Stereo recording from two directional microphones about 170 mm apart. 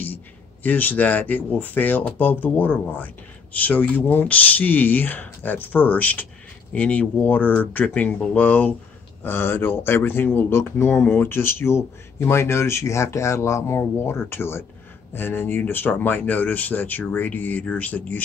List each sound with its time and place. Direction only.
0.7 s speech: 10° left (ahead or behind)